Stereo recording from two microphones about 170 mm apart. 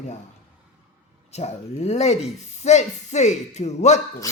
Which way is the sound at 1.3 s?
40° left (ahead or behind).